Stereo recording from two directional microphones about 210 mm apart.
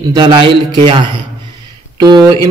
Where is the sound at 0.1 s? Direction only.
20° right (ahead or behind).